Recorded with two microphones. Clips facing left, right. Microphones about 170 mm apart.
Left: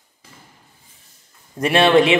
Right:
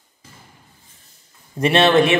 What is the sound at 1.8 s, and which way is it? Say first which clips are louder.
Speech: left 2 dB; 15° left (ahead or behind).